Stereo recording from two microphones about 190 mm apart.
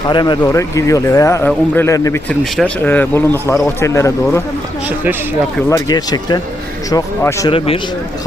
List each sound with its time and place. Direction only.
0.1 s speech: 25° left (ahead or behind)
5.6 s speech: 15° left (ahead or behind)